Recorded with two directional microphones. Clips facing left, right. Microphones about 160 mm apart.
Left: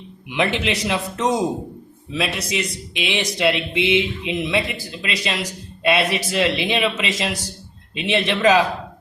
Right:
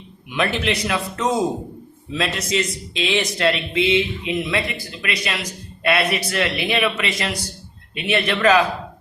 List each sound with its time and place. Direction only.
0.3 s a man's voice: 20° left (ahead or behind)